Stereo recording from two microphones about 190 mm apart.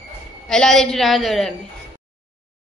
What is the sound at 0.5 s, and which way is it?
A woman's voice, 5° left (ahead or behind).